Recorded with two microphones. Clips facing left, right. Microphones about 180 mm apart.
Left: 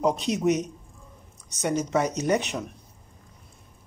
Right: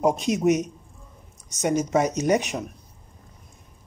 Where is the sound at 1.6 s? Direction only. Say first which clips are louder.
Right 3 dB; 10° right (ahead or behind).